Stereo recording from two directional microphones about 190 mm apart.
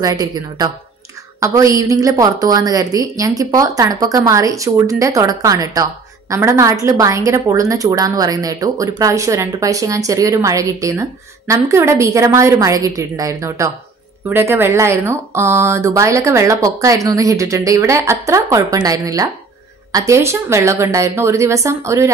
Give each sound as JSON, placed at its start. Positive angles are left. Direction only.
{"t": 0.0, "sound": "a woman's voice", "side_deg": -20}